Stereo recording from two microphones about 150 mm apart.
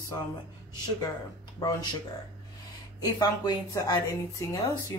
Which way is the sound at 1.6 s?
25° left (ahead or behind).